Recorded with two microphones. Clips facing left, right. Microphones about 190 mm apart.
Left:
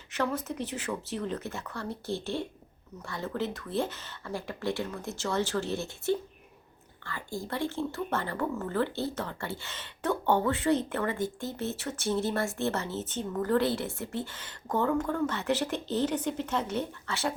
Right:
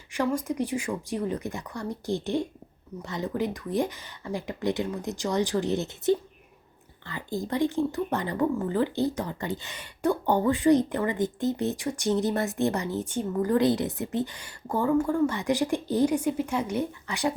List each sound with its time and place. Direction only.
0.1 s a woman's voice: 10° right (ahead or behind)